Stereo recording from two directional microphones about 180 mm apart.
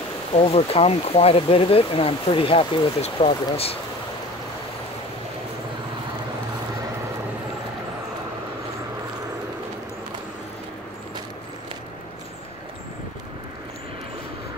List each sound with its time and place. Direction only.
0.3 s speech: 35° left (ahead or behind)